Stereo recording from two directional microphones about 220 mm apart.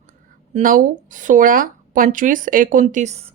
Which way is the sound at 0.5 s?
40° right (ahead or behind).